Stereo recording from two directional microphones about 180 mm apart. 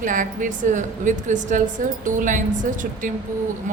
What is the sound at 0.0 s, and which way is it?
A woman's voice, 45° right (ahead or behind).